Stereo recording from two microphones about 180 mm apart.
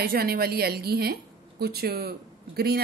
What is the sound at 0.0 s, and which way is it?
A woman's voice, 55° right (ahead or behind).